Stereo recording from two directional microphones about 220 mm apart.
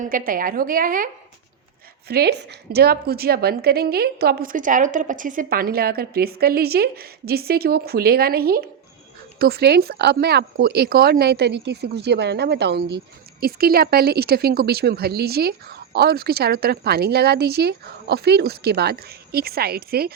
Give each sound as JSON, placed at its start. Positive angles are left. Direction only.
{"t": 0.0, "sound": "a woman's voice", "side_deg": -40}